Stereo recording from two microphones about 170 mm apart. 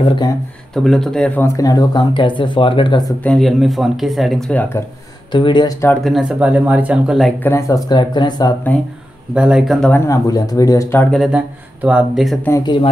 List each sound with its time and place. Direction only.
0.7 s speech: centre (ahead or behind); by 3.2 s 25° left (ahead or behind)
3.2 s speech: 5° left (ahead or behind)
5.3 s speech: 25° left (ahead or behind)
6.0 s speech: 5° right (ahead or behind)
7.4 s speech: 15° left (ahead or behind)
9.3 s speech: 5° right (ahead or behind); by 11.1 s 15° left (ahead or behind)
11.1 s speech: 5° right (ahead or behind)
12.6 s speech: 30° left (ahead or behind)